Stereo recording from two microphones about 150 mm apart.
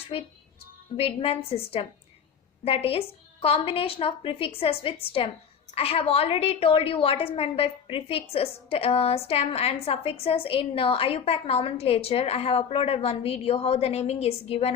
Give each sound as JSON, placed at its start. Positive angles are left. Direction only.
{"t": 0.9, "sound": "a woman's voice", "side_deg": 40}